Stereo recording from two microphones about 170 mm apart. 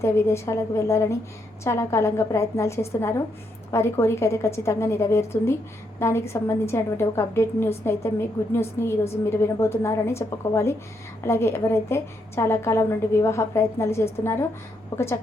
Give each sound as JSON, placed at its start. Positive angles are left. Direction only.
{"t": 0.0, "sound": "a woman's voice", "side_deg": 15}